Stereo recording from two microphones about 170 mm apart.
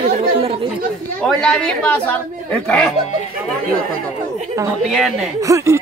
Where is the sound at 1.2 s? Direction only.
5° left (ahead or behind).